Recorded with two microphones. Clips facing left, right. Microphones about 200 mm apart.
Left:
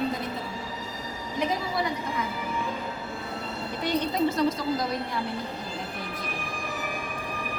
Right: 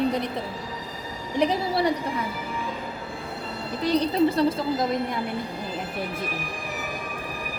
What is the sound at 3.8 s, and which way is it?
Speech, 35° right (ahead or behind).